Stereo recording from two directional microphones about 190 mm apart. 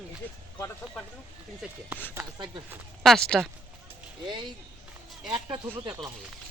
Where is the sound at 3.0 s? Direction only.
5° left (ahead or behind).